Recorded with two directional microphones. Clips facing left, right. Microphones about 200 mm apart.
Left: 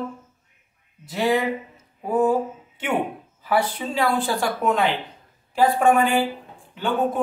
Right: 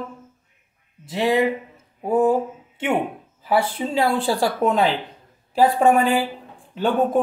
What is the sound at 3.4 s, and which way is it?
A woman's voice, 25° right (ahead or behind).